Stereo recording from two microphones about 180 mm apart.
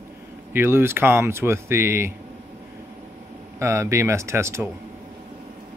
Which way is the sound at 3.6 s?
15° right (ahead or behind).